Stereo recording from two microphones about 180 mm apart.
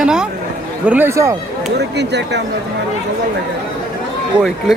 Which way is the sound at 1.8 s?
70° right (ahead or behind).